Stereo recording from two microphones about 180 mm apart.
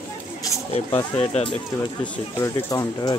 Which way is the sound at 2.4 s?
20° left (ahead or behind).